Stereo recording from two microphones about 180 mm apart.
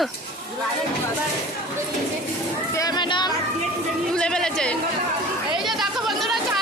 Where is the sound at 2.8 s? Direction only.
25° left (ahead or behind).